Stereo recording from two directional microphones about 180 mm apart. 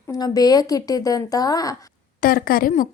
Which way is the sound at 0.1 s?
20° left (ahead or behind).